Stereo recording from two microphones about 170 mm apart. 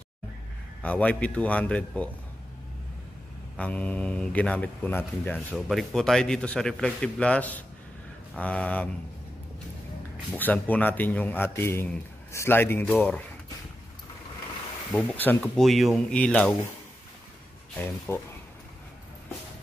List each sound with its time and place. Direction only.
0.8 s a man's voice: 10° left (ahead or behind)
3.5 s a man's voice: 10° left (ahead or behind)
10.3 s a man's voice: 10° left (ahead or behind)
14.9 s a man's voice: 5° left (ahead or behind)
17.7 s a man's voice: 15° left (ahead or behind)